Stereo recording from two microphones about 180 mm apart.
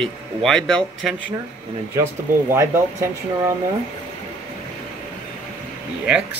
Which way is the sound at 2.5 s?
15° right (ahead or behind).